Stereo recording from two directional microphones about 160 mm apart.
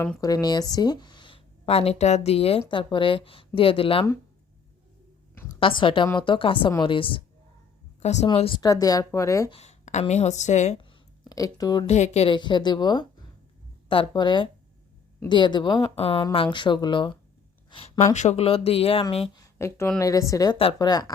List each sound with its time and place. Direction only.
0.2 s speech: 25° left (ahead or behind)
5.5 s speech: 35° left (ahead or behind)
8.0 s a woman's voice: 45° left (ahead or behind)
8.3 s speech: 30° left (ahead or behind)
8.6 s a woman's voice: 20° left (ahead or behind)
9.5 s a woman's voice: 45° left (ahead or behind)
11.3 s a woman's voice: 20° left (ahead or behind)
11.9 s a woman's voice: 45° left (ahead or behind); by 17.2 s 30° left (ahead or behind)
17.7 s a sound: 30° left (ahead or behind)
18.0 s speech: 50° left (ahead or behind)
19.4 s a woman's voice: 15° left (ahead or behind)